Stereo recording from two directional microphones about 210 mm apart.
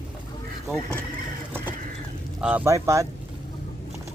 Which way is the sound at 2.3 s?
5° right (ahead or behind).